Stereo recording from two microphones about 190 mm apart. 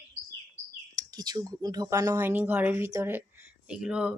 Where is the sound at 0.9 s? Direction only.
20° right (ahead or behind).